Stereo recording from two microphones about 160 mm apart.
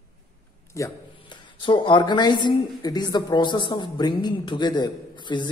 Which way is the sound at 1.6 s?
30° left (ahead or behind).